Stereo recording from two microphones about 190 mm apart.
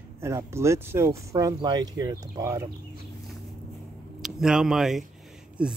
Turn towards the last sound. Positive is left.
turn(degrees=-5)  # may be behind; listen again after turning